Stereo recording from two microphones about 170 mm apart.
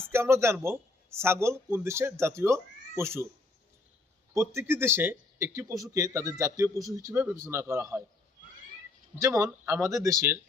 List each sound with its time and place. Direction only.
0.1 s speech: 15° right (ahead or behind)
4.4 s speech: 15° right (ahead or behind)
9.1 s speech: 20° right (ahead or behind)